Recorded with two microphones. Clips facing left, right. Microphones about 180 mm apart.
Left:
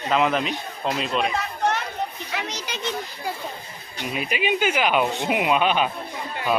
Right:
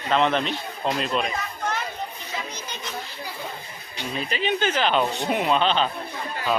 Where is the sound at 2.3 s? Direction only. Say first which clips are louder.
Left 3 dB; 75° left (ahead or behind).